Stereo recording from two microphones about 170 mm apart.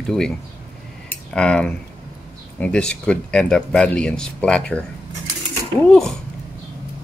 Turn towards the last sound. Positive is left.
turn(degrees=5)  # may be behind; listen again after turning